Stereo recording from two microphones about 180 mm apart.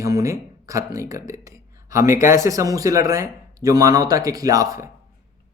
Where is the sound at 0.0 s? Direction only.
20° right (ahead or behind).